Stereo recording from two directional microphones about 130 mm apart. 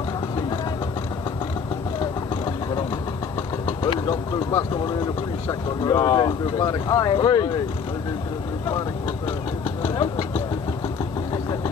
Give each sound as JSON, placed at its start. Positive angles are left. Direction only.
{"t": 3.8, "sound": "speech", "side_deg": 35}
{"t": 9.8, "sound": "vehicle", "side_deg": 25}